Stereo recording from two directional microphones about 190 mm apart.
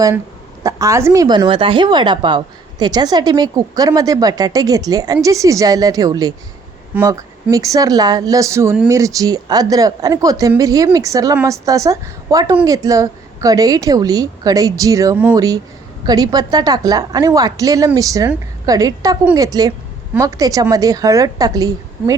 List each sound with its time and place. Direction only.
0.6 s a woman's voice: 15° right (ahead or behind)